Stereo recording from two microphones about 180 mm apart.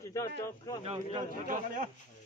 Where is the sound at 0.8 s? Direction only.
30° right (ahead or behind).